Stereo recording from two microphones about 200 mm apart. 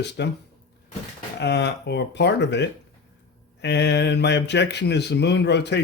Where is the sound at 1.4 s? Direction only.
55° left (ahead or behind).